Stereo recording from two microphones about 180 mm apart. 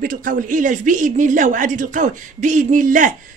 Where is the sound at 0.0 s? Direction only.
50° right (ahead or behind).